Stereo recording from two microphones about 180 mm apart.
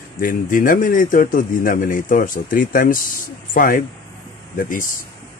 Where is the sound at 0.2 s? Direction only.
50° left (ahead or behind).